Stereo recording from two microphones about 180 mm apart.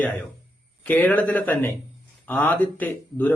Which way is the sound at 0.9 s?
10° left (ahead or behind).